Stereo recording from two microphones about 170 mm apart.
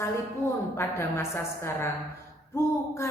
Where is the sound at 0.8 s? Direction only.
15° left (ahead or behind).